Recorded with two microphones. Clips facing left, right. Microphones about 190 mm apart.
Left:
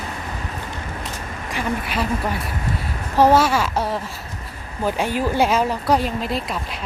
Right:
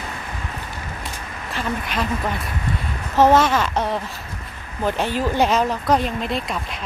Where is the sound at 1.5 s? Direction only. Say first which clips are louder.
Left 1 dB; 10° left (ahead or behind).